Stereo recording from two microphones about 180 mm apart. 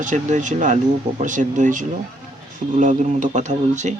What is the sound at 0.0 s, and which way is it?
Speech, 45° right (ahead or behind).